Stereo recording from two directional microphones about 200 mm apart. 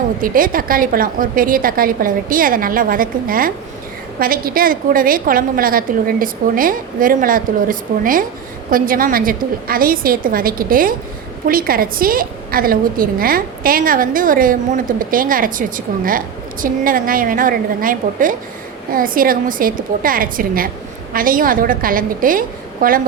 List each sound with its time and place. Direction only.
0.2 s a woman's voice: 45° right (ahead or behind)